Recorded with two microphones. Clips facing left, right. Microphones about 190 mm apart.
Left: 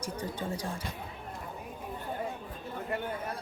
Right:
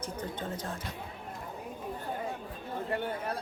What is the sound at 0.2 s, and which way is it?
Speech, 10° left (ahead or behind).